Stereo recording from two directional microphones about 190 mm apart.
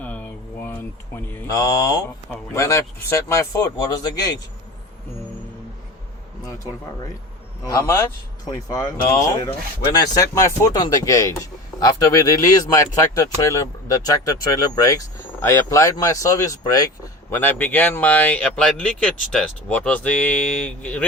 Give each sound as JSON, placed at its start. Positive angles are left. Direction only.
{"t": 0.0, "sound": "speech", "side_deg": 10}
{"t": 7.6, "sound": "speech", "side_deg": 15}